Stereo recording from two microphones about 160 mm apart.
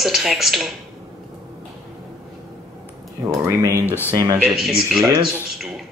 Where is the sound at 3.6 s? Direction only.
20° right (ahead or behind).